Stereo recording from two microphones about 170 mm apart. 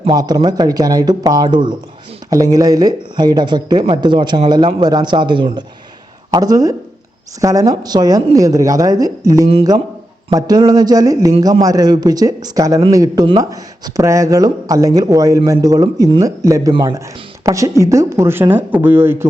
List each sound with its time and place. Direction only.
0.1 s speech: 25° right (ahead or behind)